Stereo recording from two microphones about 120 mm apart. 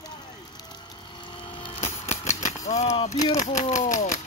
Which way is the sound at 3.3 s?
90° left.